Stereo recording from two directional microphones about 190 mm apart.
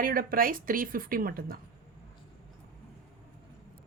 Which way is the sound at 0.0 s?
50° right (ahead or behind).